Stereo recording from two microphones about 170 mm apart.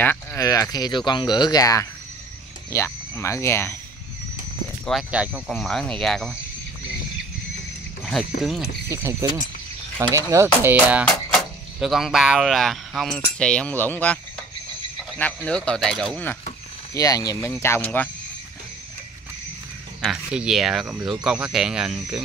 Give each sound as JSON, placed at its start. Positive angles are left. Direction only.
{"t": 0.0, "sound": "speech", "side_deg": 10}
{"t": 4.8, "sound": "speech", "side_deg": -5}
{"t": 8.0, "sound": "speech", "side_deg": 0}
{"t": 8.9, "sound": "speech", "side_deg": -15}
{"t": 16.9, "sound": "speech", "side_deg": 20}
{"t": 20.0, "sound": "speech", "side_deg": 0}